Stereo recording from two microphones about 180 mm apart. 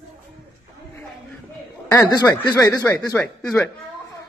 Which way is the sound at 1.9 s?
20° left (ahead or behind).